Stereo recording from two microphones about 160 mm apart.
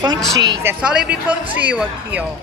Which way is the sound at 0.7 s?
5° right (ahead or behind).